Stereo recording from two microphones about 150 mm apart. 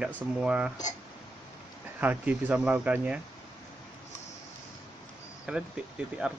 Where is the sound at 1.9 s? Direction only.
10° right (ahead or behind).